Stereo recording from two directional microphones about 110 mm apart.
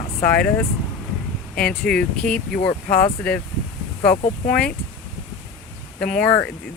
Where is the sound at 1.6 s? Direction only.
5° left (ahead or behind).